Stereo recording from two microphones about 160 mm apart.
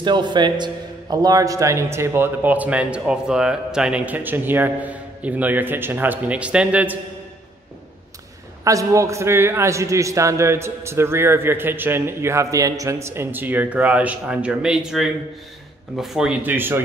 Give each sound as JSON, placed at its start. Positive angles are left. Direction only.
{"t": 0.0, "sound": "a man's voice", "side_deg": -30}
{"t": 8.6, "sound": "a man's voice", "side_deg": -20}